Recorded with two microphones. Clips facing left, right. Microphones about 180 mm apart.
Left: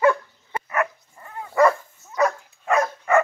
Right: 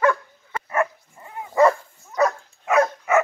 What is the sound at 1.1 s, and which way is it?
Dog, 15° right (ahead or behind).